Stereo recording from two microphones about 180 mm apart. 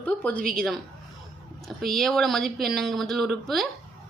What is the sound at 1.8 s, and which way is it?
A woman's voice, centre (ahead or behind).